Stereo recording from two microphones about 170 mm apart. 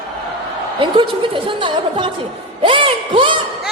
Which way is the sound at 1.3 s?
30° right (ahead or behind).